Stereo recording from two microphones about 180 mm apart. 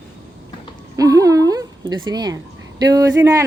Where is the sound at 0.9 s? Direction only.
20° right (ahead or behind).